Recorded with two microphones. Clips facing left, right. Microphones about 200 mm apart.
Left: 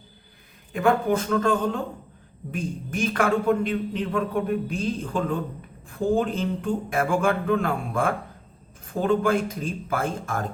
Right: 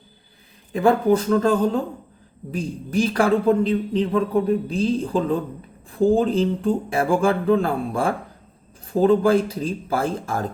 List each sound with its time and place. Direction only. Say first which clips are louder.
0.7 s a man's voice: right 4 dB; 35° right (ahead or behind)